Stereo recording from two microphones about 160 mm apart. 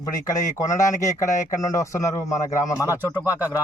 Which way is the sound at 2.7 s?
20° left (ahead or behind).